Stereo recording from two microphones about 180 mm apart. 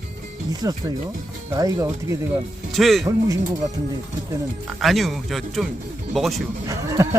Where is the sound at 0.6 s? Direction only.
20° right (ahead or behind).